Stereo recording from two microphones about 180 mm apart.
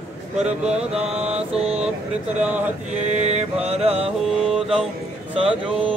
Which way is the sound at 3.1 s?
40° right (ahead or behind).